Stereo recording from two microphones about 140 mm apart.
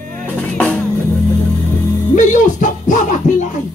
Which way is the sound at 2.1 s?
65° left (ahead or behind).